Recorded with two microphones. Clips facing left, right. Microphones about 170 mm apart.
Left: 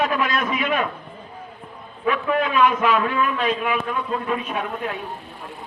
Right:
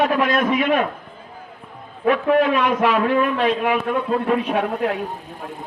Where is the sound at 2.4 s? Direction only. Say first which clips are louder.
Right 2 dB; 60° right (ahead or behind).